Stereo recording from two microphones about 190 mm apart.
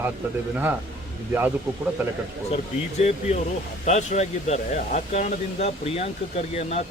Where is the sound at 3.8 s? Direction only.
35° left (ahead or behind).